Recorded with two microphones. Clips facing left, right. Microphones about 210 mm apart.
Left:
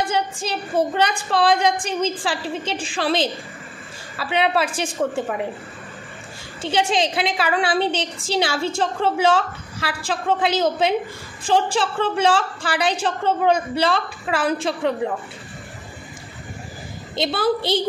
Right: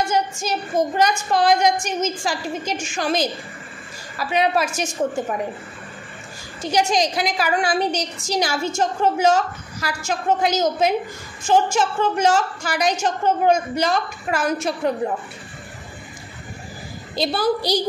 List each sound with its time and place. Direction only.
0.0 s a woman's voice: 30° left (ahead or behind)
6.6 s a woman's voice: 30° left (ahead or behind)
17.1 s a woman's voice: 25° left (ahead or behind)